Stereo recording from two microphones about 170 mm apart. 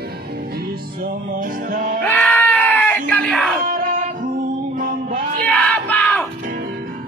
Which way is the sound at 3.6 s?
55° right (ahead or behind).